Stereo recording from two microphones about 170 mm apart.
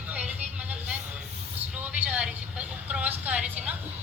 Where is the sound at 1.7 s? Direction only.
10° right (ahead or behind).